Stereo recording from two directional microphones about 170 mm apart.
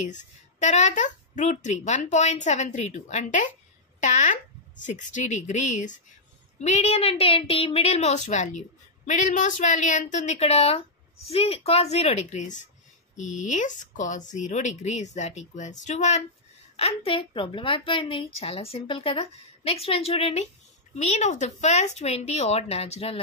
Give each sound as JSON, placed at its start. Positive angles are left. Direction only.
{"t": 0.0, "sound": "a woman's voice", "side_deg": 45}